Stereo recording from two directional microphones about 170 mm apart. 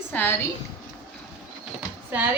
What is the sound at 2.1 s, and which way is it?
Speech, 10° right (ahead or behind).